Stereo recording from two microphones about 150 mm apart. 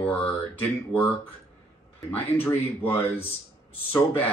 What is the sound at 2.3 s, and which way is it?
Speech, 15° left (ahead or behind).